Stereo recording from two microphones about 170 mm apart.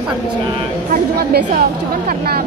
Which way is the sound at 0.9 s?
60° right (ahead or behind).